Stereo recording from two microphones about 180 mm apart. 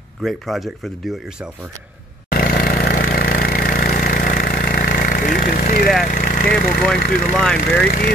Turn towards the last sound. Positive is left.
turn(degrees=0)  # may be behind; listen again after turning